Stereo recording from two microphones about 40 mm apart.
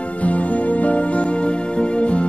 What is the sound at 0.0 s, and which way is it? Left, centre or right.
Music, left.